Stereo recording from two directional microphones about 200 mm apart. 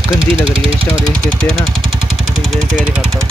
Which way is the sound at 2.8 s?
5° right (ahead or behind).